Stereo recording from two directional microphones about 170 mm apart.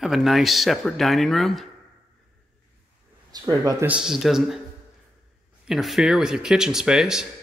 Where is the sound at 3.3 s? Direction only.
20° right (ahead or behind).